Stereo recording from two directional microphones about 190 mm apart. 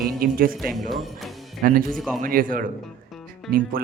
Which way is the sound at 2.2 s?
45° right (ahead or behind).